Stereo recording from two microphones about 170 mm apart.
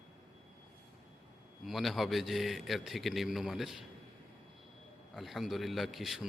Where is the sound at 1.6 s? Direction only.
Centre (ahead or behind).